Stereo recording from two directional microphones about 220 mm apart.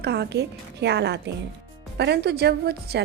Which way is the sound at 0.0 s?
50° right (ahead or behind).